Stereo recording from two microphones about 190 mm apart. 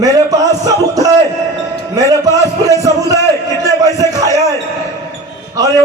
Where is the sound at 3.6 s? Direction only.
20° right (ahead or behind).